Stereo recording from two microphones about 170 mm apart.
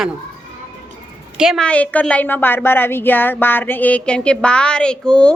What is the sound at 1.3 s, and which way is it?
Speech, centre (ahead or behind).